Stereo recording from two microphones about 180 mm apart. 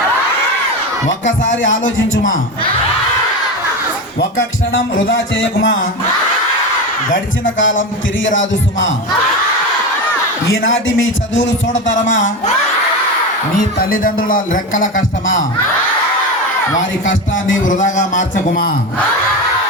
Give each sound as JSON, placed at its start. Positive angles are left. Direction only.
{"t": 1.2, "sound": "a man's voice", "side_deg": 90}
{"t": 4.2, "sound": "a man's voice", "side_deg": 90}
{"t": 4.9, "sound": "speech", "side_deg": 60}
{"t": 7.6, "sound": "a man's voice", "side_deg": 90}
{"t": 10.5, "sound": "a man's voice", "side_deg": 90}
{"t": 13.7, "sound": "speech", "side_deg": 50}
{"t": 17.1, "sound": "a man's voice", "side_deg": 90}
{"t": 17.7, "sound": "speech", "side_deg": 45}